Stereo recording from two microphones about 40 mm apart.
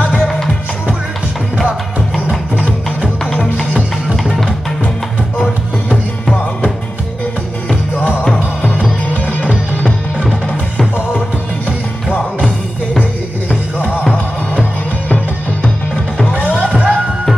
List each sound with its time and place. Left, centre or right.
3.5 s music: right
9.1 s music: left
15.0 s music: left
16.3 s music: right